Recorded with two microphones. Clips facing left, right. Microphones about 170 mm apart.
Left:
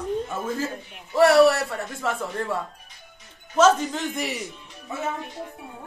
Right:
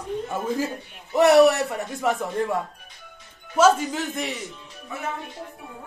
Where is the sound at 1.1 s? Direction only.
20° right (ahead or behind).